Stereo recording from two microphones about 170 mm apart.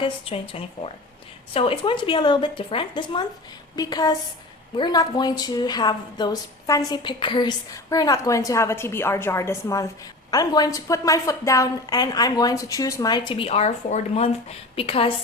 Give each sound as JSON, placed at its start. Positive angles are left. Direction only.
{"t": 0.0, "sound": "a woman's voice", "side_deg": 35}